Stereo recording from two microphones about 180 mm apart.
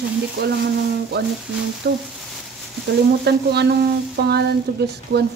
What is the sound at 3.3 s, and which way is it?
Frying, 65° right (ahead or behind).